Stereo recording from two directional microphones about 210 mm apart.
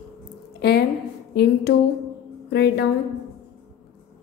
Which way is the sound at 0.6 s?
50° left (ahead or behind).